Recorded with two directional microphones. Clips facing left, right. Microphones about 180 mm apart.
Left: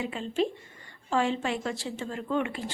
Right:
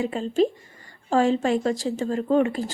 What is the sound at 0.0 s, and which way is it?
A woman's voice, 40° right (ahead or behind).